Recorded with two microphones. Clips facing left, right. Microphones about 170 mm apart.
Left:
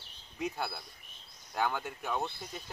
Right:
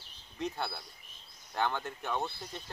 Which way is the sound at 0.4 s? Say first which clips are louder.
Even; 5° left (ahead or behind).